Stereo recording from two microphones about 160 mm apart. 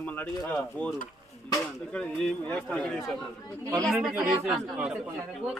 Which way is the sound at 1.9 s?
5° left (ahead or behind).